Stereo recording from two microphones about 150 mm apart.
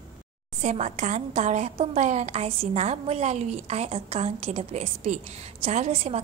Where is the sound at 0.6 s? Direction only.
50° right (ahead or behind).